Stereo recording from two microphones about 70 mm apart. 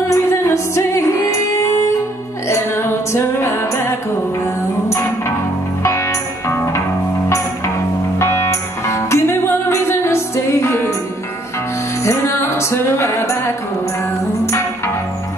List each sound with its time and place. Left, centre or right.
0.1 s music: left
2.4 s music: left
5.9 s music: left
12.0 s music: left